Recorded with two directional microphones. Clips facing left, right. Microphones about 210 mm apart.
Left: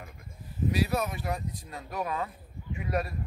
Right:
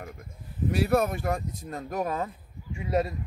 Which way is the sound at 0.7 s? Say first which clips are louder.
Right 5 dB; 55° right (ahead or behind).